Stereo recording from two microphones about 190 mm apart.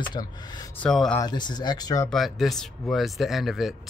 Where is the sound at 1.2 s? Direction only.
20° left (ahead or behind).